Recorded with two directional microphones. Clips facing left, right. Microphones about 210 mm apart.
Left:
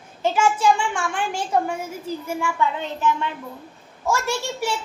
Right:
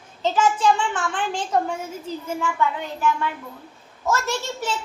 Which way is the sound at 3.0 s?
20° left (ahead or behind).